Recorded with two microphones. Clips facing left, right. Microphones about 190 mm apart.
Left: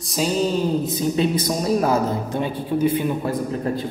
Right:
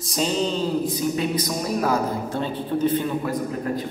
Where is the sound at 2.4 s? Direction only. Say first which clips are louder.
Left 2 dB; 10° left (ahead or behind).